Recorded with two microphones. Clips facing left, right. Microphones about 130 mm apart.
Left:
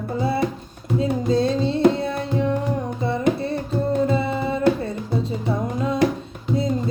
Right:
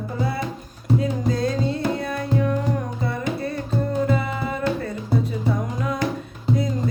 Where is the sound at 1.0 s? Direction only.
25° left (ahead or behind).